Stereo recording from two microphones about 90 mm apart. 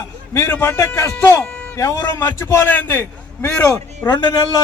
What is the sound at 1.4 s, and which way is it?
Music, 10° left (ahead or behind).